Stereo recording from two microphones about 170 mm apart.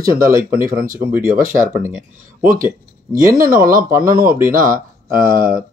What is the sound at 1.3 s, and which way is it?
Speech, 50° right (ahead or behind).